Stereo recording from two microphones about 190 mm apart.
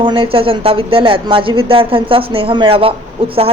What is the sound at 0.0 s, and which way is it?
Speech, 25° right (ahead or behind).